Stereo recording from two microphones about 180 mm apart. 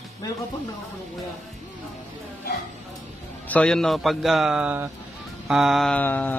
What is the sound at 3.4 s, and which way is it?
A man's voice, 5° left (ahead or behind).